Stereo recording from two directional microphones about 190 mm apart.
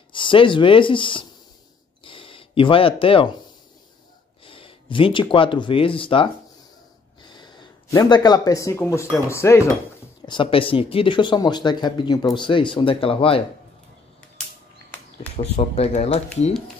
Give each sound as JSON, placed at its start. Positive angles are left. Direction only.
{"t": 0.1, "sound": "speech", "side_deg": 25}
{"t": 2.0, "sound": "a sound", "side_deg": 25}
{"t": 4.5, "sound": "speech", "side_deg": 25}
{"t": 7.9, "sound": "speech", "side_deg": 20}
{"t": 10.2, "sound": "speech", "side_deg": 25}
{"t": 15.3, "sound": "speech", "side_deg": 35}